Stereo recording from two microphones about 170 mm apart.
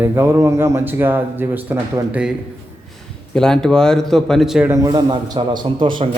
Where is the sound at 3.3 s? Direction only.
5° left (ahead or behind).